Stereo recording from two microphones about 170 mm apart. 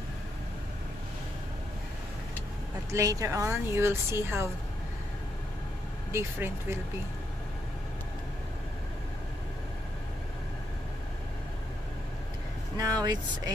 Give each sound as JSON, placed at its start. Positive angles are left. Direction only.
{"t": 2.9, "sound": "speech", "side_deg": -20}
{"t": 6.1, "sound": "speech", "side_deg": -15}
{"t": 12.7, "sound": "vehicle", "side_deg": -25}